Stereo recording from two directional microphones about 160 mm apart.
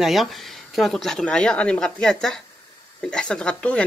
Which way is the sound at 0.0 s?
Centre (ahead or behind).